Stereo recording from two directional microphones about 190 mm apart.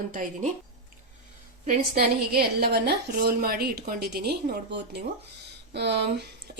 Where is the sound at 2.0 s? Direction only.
55° right (ahead or behind).